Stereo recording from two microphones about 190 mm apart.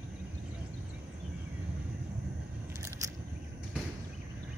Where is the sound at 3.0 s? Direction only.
15° right (ahead or behind).